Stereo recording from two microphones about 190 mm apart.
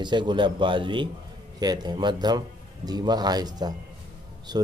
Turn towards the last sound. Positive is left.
turn(degrees=-20)  # may be behind; listen again after turning